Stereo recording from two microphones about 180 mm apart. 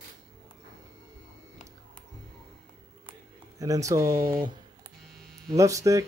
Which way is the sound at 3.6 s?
20° right (ahead or behind).